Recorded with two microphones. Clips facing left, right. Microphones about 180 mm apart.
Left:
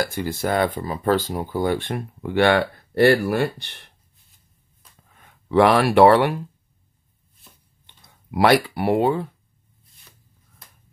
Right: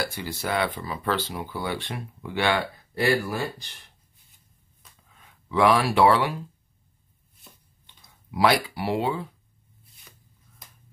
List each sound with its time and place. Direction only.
0.0 s speech: 50° left (ahead or behind); by 3.9 s 65° left (ahead or behind)
5.2 s speech: 60° left (ahead or behind)
7.8 s speech: 60° left (ahead or behind)